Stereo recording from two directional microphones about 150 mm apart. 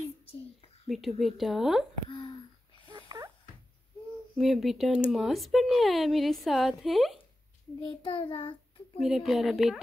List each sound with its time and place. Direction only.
0.8 s a woman's voice: centre (ahead or behind)
2.0 s a sound: 30° left (ahead or behind)
2.9 s a sound: 30° right (ahead or behind)
4.4 s a woman's voice: centre (ahead or behind)
8.0 s child singing: 35° left (ahead or behind)
8.9 s a woman's voice: centre (ahead or behind)